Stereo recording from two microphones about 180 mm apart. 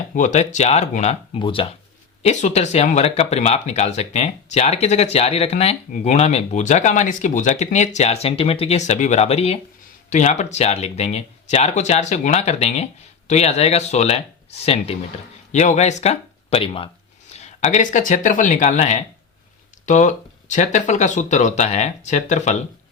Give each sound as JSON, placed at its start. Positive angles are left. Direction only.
{"t": 0.1, "sound": "speech", "side_deg": 45}
{"t": 2.2, "sound": "speech", "side_deg": 40}